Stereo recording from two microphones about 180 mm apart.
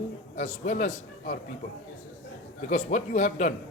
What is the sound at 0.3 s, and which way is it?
A man's voice, 40° left (ahead or behind).